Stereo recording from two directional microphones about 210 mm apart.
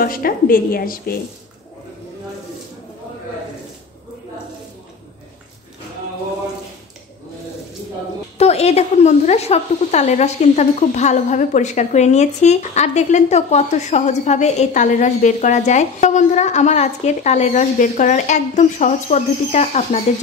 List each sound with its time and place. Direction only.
0.0 s a woman's voice: 45° left (ahead or behind)
8.4 s speech: 30° left (ahead or behind)